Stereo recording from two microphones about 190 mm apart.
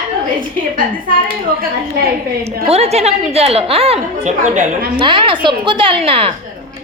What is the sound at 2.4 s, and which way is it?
A woman's voice, 35° right (ahead or behind).